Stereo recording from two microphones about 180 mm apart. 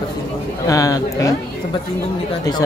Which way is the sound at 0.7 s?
20° left (ahead or behind).